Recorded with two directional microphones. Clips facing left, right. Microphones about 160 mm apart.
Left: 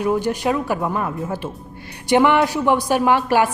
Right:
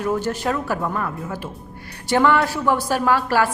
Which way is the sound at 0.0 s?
15° left (ahead or behind).